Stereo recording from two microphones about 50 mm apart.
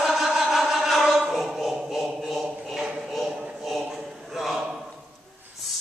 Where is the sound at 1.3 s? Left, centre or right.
Centre.